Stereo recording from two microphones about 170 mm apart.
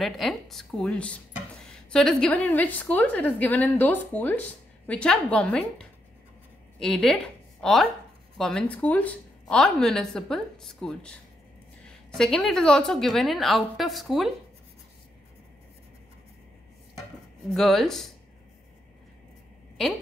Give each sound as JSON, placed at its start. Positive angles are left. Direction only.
{"t": 0.0, "sound": "a woman's voice", "side_deg": 0}
{"t": 6.8, "sound": "a woman's voice", "side_deg": 0}
{"t": 12.2, "sound": "a woman's voice", "side_deg": 5}
{"t": 17.6, "sound": "a woman's voice", "side_deg": 0}